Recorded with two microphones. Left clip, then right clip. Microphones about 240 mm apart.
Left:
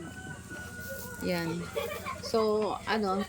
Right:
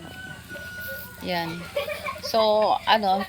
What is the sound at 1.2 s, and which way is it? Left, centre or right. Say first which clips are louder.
Speech: right 4 dB; centre.